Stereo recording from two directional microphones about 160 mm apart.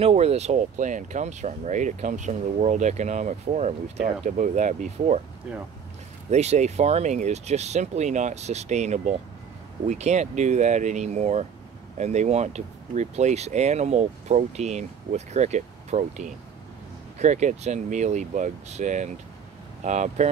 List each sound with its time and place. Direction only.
0.0 s speech: 40° right (ahead or behind)
5.5 s speech: 5° right (ahead or behind)
6.3 s speech: 45° right (ahead or behind)